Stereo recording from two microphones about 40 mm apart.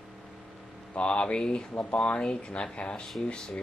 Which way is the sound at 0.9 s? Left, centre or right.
Left.